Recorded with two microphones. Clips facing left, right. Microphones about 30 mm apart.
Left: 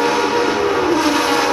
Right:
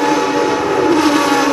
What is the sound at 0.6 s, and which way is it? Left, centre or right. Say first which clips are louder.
Train: right 2 dB; left.